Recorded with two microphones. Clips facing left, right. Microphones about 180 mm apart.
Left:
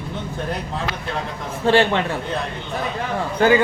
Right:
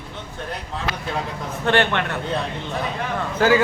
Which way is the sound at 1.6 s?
10° left (ahead or behind).